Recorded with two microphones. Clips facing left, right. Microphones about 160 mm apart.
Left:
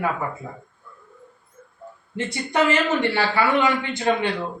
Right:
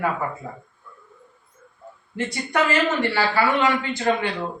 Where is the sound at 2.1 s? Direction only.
20° left (ahead or behind).